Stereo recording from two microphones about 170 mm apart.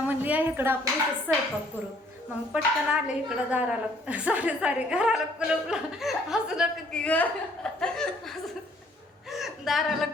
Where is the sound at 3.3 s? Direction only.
5° right (ahead or behind).